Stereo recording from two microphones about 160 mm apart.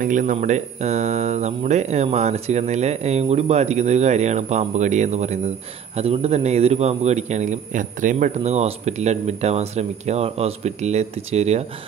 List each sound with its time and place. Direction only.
0.0 s a man's voice: 55° right (ahead or behind)